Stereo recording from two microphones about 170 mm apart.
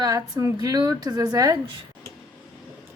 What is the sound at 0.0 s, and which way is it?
Speech, 20° right (ahead or behind).